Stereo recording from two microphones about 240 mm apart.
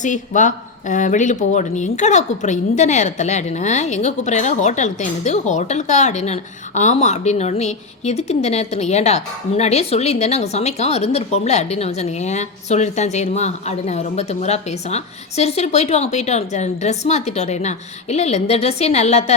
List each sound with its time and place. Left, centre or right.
0.0 s speech: left